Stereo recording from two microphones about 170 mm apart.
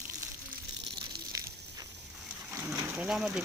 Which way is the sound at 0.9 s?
20° right (ahead or behind).